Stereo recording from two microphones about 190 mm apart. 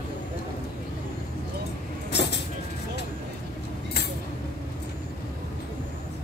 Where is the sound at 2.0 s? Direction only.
65° left (ahead or behind).